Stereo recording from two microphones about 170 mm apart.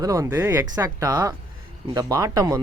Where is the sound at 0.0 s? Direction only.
20° right (ahead or behind).